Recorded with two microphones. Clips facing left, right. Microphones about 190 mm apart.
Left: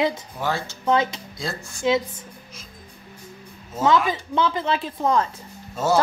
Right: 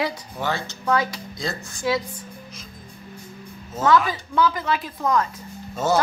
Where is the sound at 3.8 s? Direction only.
20° left (ahead or behind).